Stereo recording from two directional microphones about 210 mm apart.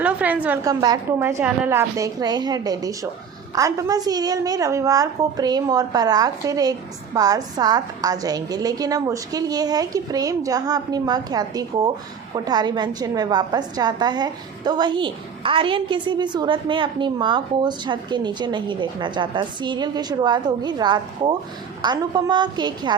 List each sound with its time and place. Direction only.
0.0 s a woman's voice: 5° right (ahead or behind)